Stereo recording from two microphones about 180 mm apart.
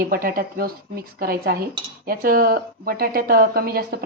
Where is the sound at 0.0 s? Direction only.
55° right (ahead or behind).